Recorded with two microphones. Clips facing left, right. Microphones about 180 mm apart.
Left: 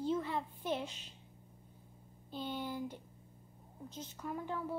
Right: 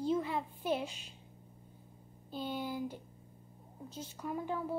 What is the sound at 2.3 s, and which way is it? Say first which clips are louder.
A woman's voice: right 2 dB; 10° right (ahead or behind).